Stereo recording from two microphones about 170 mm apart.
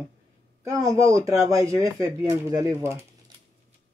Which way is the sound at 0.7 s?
20° right (ahead or behind).